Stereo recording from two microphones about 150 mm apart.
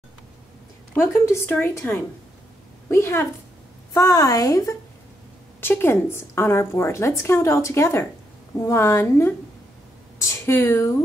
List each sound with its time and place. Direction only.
0.9 s a woman's voice: 15° left (ahead or behind)